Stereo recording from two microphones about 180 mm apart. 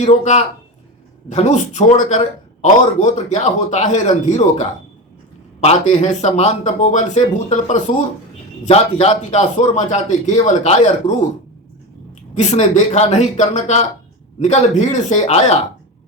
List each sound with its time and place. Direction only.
0.0 s speech: 40° left (ahead or behind)
12.4 s speech: 40° left (ahead or behind)